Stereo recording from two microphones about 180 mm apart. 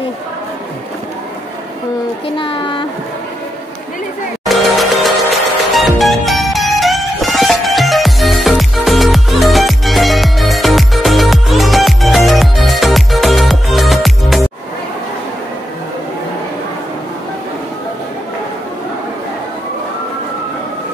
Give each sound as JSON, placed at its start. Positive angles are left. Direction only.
{"t": 2.3, "sound": "speech", "side_deg": 30}
{"t": 4.5, "sound": "music", "side_deg": 0}